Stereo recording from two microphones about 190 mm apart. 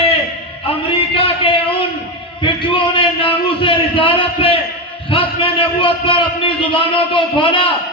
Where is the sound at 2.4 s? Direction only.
25° left (ahead or behind).